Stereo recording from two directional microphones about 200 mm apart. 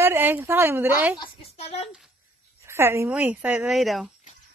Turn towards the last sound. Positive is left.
turn(degrees=0)  # may be behind; listen again after turning